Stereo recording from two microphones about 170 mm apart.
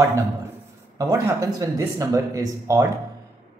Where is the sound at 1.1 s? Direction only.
20° right (ahead or behind).